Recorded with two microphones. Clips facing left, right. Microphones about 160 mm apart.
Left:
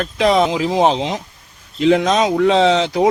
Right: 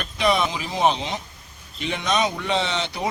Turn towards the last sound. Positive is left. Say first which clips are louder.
# left 12 dB
turn(degrees=90)